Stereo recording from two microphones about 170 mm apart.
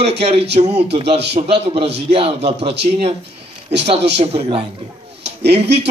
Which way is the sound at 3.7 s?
35° right (ahead or behind).